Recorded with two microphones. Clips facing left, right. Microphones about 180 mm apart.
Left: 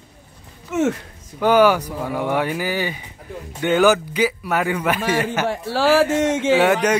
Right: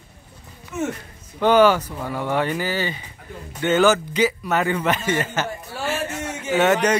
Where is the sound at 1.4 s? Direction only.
10° left (ahead or behind).